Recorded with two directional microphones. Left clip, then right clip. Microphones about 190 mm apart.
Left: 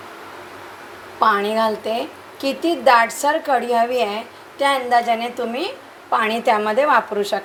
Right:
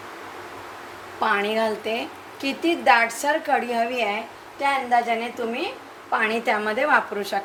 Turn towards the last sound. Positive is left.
turn(degrees=20)  # may be behind; listen again after turning